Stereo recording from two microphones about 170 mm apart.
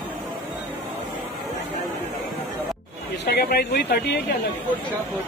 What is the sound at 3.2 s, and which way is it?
Speech, 70° left (ahead or behind).